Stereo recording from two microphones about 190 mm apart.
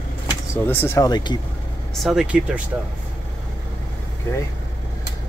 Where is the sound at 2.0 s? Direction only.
5° right (ahead or behind).